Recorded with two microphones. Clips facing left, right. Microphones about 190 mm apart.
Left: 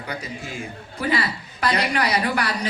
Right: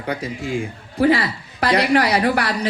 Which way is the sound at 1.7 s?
70° right (ahead or behind).